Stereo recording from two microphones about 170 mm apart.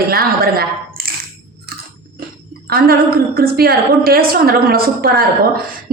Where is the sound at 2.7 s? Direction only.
65° right (ahead or behind).